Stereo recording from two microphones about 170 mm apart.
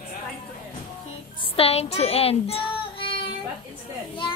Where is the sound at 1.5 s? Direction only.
35° left (ahead or behind).